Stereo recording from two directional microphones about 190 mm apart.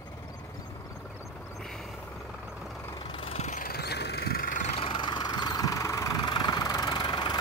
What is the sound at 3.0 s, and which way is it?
Vehicle, 25° left (ahead or behind).